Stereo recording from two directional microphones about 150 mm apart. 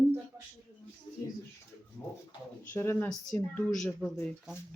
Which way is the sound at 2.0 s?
15° left (ahead or behind).